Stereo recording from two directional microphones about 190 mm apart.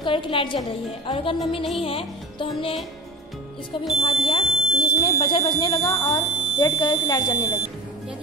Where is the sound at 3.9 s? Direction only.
30° left (ahead or behind).